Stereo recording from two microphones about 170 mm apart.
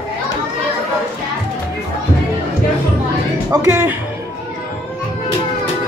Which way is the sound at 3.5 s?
20° right (ahead or behind).